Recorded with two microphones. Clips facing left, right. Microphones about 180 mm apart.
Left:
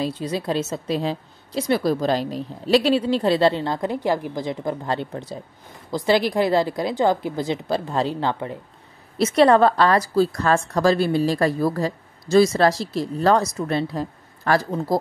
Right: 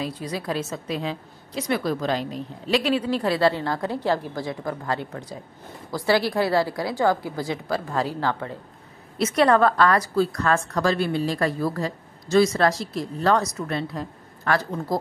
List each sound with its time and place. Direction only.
0.0 s a woman's voice: 25° left (ahead or behind)